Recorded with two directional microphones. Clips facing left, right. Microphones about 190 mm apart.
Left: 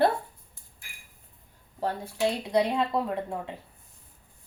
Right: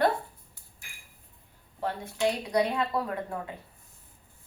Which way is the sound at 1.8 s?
35° left (ahead or behind).